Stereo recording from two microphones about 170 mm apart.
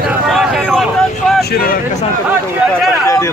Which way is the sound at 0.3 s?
Centre (ahead or behind).